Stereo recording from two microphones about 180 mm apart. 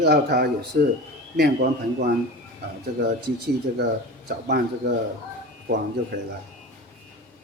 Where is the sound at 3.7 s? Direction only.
55° right (ahead or behind).